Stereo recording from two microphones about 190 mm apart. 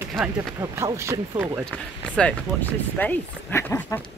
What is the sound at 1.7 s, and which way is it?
Speech, 5° left (ahead or behind).